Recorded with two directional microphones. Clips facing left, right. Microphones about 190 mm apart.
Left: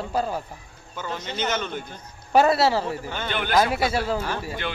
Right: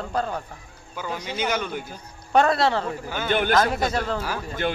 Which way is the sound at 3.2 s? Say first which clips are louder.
Right 7 dB; 45° right (ahead or behind).